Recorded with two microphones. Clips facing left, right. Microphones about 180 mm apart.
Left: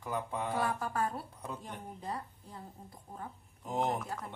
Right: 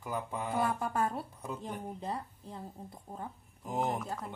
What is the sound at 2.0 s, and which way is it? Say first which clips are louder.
Speech: right 2 dB; 25° right (ahead or behind).